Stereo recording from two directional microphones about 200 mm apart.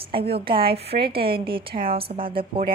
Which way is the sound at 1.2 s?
25° right (ahead or behind).